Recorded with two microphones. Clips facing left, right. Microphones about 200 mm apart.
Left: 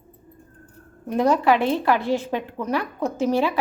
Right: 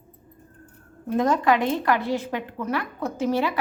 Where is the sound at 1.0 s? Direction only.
10° left (ahead or behind).